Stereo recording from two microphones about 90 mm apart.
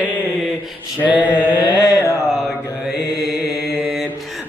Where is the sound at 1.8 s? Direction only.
35° left (ahead or behind).